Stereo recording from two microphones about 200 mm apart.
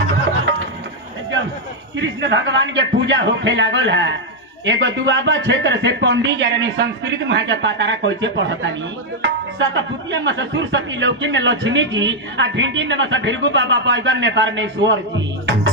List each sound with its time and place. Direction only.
2.0 s speech: 65° right (ahead or behind)